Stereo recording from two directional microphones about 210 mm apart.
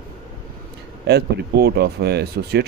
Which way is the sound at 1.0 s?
50° right (ahead or behind).